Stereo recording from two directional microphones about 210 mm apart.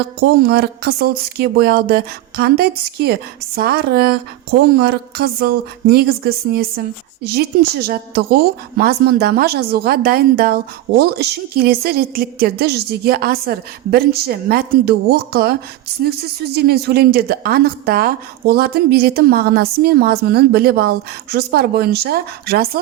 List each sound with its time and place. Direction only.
0.2 s a woman's voice: 50° right (ahead or behind)